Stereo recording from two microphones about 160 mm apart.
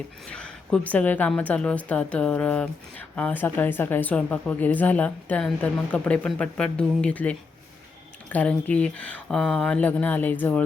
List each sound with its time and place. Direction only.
0.3 s a woman's voice: 5° left (ahead or behind)